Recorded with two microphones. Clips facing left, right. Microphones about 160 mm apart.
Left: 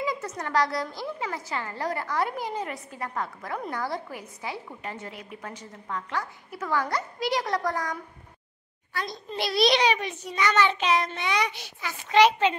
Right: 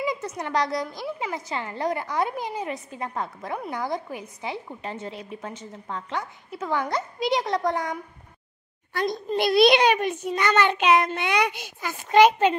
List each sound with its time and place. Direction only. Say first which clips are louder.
0.0 s a woman's voice: right 2 dB; 20° right (ahead or behind)
9.3 s a child's voice: right 5 dB; 55° right (ahead or behind)